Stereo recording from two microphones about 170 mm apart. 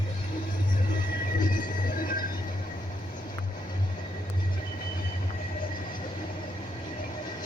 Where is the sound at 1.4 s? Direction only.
50° left (ahead or behind).